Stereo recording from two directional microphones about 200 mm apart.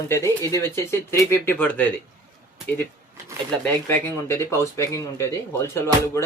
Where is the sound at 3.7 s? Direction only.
10° left (ahead or behind).